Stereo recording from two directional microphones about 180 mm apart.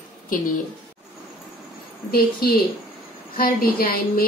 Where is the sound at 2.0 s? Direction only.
60° left (ahead or behind).